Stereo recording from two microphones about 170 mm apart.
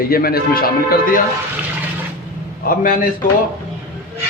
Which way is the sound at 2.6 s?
55° left (ahead or behind).